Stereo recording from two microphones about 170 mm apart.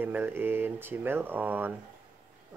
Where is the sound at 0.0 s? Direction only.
10° right (ahead or behind).